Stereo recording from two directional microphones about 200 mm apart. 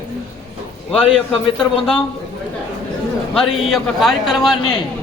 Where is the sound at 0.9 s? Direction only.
5° left (ahead or behind).